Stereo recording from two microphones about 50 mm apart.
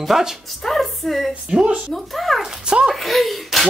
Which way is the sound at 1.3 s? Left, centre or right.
Centre.